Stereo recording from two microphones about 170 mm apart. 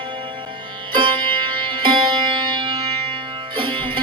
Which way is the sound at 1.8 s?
25° right (ahead or behind).